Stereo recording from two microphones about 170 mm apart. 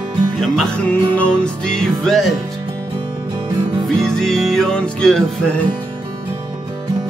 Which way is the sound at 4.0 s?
Centre (ahead or behind).